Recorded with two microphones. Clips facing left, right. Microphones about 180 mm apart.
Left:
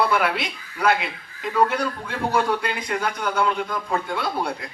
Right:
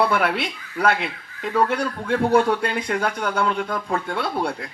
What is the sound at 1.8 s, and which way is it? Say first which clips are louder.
A man's voice: right 4 dB; 60° right (ahead or behind).